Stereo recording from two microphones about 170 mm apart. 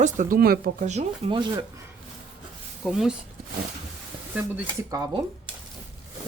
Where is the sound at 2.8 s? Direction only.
Centre (ahead or behind).